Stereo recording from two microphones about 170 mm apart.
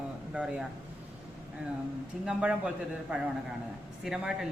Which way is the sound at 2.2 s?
5° right (ahead or behind).